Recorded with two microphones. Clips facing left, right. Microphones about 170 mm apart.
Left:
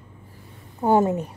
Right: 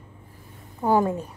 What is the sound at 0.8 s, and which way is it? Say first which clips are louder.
Speech: left 2 dB; 25° left (ahead or behind).